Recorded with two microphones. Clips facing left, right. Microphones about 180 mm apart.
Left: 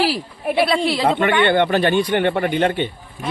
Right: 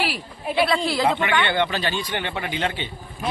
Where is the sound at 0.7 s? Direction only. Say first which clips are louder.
Left 3 dB; 30° left (ahead or behind).